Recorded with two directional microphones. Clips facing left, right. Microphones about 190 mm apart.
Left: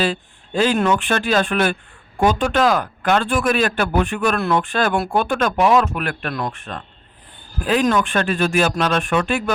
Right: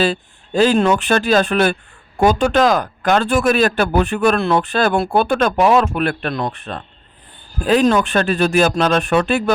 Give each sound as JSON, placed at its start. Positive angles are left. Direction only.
{"t": 0.0, "sound": "speech", "side_deg": -40}